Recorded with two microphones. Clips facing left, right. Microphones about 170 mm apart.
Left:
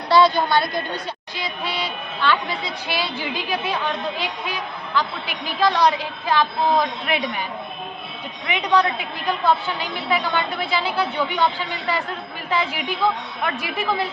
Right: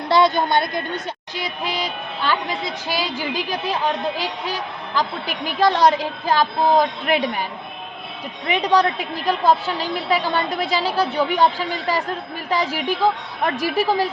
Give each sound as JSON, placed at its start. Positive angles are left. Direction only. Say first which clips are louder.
{"t": 0.3, "sound": "a woman's voice", "louder": "right 1 dB", "side_deg": -20}
{"t": 1.8, "sound": "a woman's voice", "louder": "left 1 dB", "side_deg": -40}
{"t": 8.4, "sound": "a woman's voice", "louder": "right 2 dB", "side_deg": -40}